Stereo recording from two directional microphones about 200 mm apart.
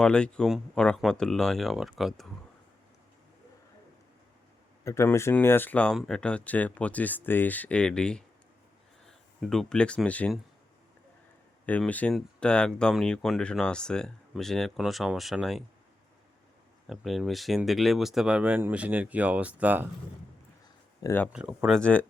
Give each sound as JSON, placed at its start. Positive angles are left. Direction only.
{"t": 0.0, "sound": "speech", "side_deg": 5}
{"t": 4.9, "sound": "speech", "side_deg": 15}
{"t": 11.6, "sound": "speech", "side_deg": 5}
{"t": 16.8, "sound": "speech", "side_deg": 0}
{"t": 21.0, "sound": "speech", "side_deg": 10}
{"t": 21.3, "sound": "speech", "side_deg": -5}